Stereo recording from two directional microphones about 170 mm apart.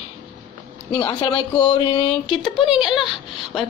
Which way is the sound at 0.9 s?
25° left (ahead or behind).